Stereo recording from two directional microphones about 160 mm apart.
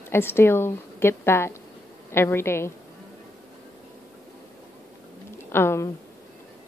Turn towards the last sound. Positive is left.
turn(degrees=15)  # may be behind; listen again after turning